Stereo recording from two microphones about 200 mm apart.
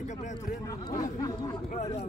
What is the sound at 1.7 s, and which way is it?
Speech, 35° left (ahead or behind).